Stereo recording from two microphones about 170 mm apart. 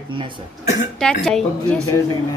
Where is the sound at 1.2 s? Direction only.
5° left (ahead or behind).